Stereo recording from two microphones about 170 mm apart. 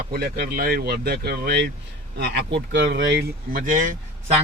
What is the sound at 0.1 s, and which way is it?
Speech, 65° right (ahead or behind).